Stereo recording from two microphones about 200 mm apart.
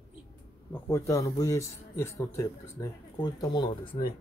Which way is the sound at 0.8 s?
15° left (ahead or behind).